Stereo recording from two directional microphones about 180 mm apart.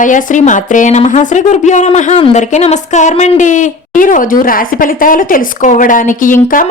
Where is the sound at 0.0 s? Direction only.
45° left (ahead or behind).